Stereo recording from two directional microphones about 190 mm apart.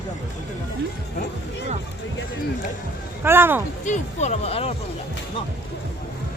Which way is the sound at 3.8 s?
40° left (ahead or behind).